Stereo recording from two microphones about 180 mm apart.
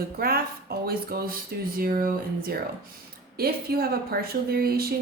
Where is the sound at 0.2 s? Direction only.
60° right (ahead or behind).